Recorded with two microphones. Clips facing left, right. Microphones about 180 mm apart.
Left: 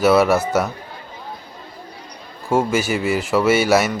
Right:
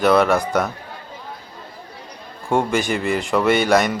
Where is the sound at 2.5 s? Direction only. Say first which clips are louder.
Left 1 dB; 5° left (ahead or behind).